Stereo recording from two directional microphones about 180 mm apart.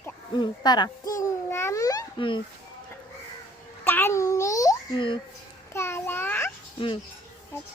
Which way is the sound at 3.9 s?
10° left (ahead or behind).